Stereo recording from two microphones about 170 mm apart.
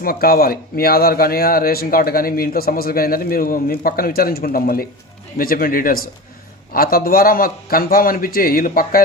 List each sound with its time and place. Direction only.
0.0 s speech: 60° left (ahead or behind)